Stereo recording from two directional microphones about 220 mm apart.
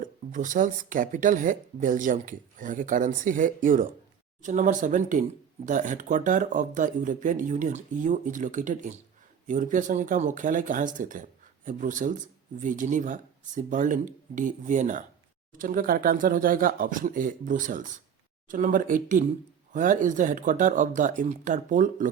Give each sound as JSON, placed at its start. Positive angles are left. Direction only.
{"t": 0.0, "sound": "speech", "side_deg": -35}